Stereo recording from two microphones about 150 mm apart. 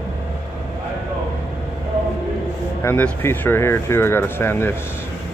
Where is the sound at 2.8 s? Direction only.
15° left (ahead or behind).